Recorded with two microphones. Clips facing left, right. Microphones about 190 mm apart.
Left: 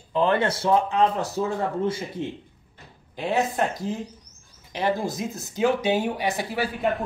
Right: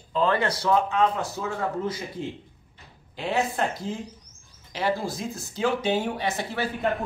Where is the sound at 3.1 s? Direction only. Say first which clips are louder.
Left 2 dB; 20° left (ahead or behind).